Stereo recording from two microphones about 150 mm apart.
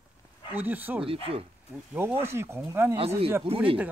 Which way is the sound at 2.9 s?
40° right (ahead or behind).